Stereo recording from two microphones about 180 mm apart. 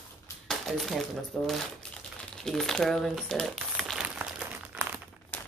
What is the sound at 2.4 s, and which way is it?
Crumpling, 5° left (ahead or behind).